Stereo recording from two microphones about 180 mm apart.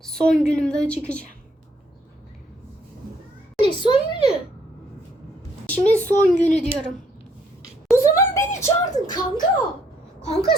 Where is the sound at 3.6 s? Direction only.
25° left (ahead or behind).